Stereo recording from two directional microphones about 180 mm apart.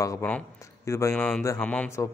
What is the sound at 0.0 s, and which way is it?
Speech, 15° left (ahead or behind).